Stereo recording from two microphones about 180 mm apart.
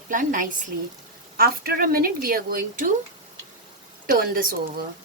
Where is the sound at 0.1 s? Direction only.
45° right (ahead or behind).